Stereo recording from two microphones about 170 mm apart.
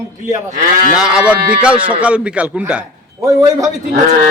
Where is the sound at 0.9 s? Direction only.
5° right (ahead or behind).